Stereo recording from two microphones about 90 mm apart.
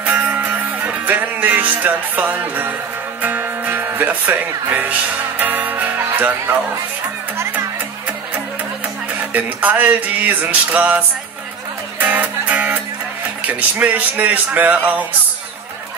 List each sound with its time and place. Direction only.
0.0 s music: 20° right (ahead or behind)
3.2 s speech: 20° right (ahead or behind)
5.4 s music: 20° right (ahead or behind)
6.0 s speech: 25° right (ahead or behind)
9.3 s music: 20° right (ahead or behind)
13.4 s speech: 15° right (ahead or behind)